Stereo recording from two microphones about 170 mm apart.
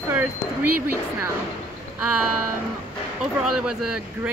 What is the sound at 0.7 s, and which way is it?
Speech, 10° right (ahead or behind).